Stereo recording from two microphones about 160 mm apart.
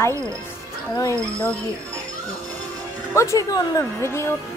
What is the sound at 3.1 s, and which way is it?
A woman's voice, 20° left (ahead or behind).